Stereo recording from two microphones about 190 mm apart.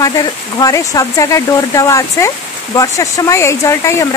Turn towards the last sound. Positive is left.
turn(degrees=15)  # may be behind; listen again after turning